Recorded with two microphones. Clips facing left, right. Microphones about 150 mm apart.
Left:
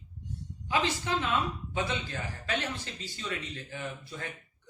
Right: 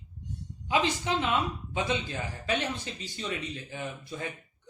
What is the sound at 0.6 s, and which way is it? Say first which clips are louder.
A woman's voice: right 2 dB; 20° right (ahead or behind).